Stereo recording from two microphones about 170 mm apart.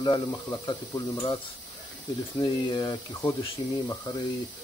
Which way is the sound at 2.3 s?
25° left (ahead or behind).